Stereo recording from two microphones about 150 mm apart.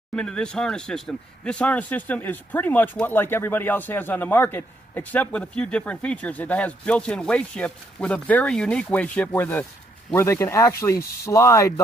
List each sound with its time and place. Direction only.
0.1 s speech: 5° left (ahead or behind); by 11.8 s 20° left (ahead or behind)